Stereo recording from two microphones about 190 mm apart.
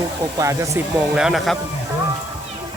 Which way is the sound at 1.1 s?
Centre (ahead or behind).